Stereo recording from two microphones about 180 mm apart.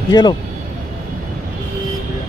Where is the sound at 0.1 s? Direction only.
25° left (ahead or behind).